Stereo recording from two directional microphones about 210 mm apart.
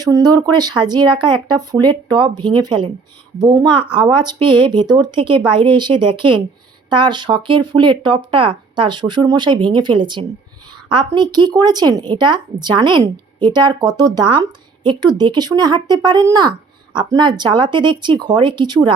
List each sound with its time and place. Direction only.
0.0 s speech: 20° right (ahead or behind)